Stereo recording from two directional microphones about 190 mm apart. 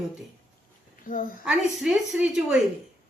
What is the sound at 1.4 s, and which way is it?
A woman's voice, 5° right (ahead or behind).